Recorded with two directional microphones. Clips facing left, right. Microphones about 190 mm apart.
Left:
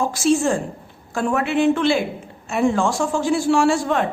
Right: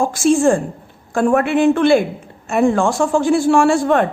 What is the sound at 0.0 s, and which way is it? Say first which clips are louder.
A woman's voice: right 5 dB; 50° right (ahead or behind).